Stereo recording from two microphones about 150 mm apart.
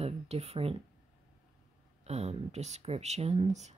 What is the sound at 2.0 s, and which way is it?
Speech, 45° right (ahead or behind).